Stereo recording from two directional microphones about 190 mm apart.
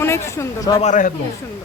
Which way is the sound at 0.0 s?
15° left (ahead or behind).